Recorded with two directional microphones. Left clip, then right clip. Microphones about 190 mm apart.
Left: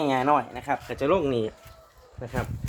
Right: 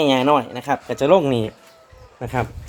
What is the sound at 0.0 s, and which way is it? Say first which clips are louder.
Speech: right 6 dB; 20° right (ahead or behind).